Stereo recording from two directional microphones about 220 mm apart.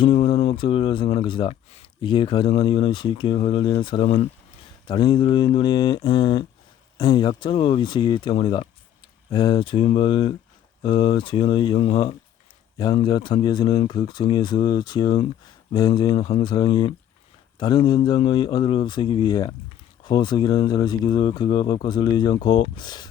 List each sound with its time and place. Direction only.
0.0 s speech: 25° left (ahead or behind)